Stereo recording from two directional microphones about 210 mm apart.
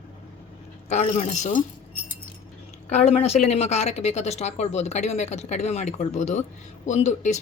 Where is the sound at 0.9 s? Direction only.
35° left (ahead or behind).